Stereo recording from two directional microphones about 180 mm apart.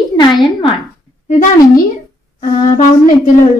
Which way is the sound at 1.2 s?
45° left (ahead or behind).